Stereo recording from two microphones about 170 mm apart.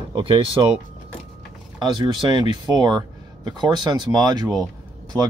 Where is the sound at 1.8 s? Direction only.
25° right (ahead or behind).